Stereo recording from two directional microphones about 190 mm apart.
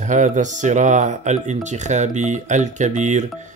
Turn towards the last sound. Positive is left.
turn(degrees=-40)  # may be behind; listen again after turning